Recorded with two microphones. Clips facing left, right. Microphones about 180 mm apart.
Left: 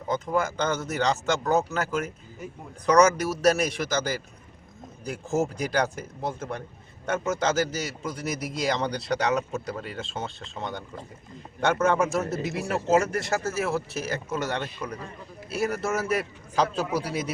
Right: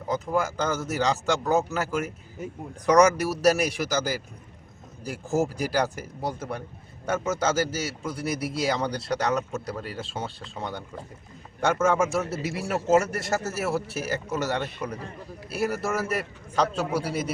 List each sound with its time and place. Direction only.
0.1 s a man's voice: 5° right (ahead or behind)
11.8 s a man's voice: centre (ahead or behind)
16.8 s a man's voice: 30° right (ahead or behind)
17.1 s a man's voice: centre (ahead or behind)